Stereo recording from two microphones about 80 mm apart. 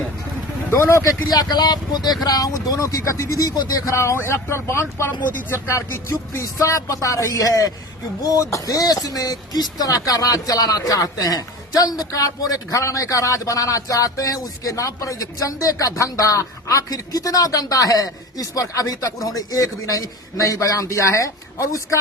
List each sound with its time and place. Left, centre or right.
0.7 s speech: left
1.3 s speech: left